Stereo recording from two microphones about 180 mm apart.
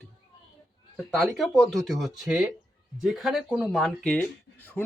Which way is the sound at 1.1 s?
Centre (ahead or behind).